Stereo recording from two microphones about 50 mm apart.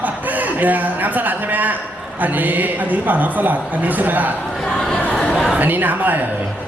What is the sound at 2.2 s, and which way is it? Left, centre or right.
A man's voice, right.